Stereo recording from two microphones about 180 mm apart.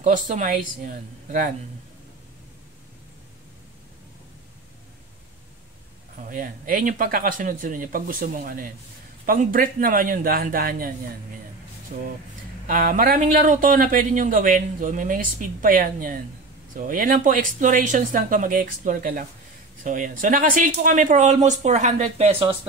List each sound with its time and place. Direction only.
0.0 s a man's voice: 45° right (ahead or behind)
6.1 s a man's voice: 50° right (ahead or behind)
11.9 s a man's voice: 50° right (ahead or behind); by 22.6 s 30° right (ahead or behind)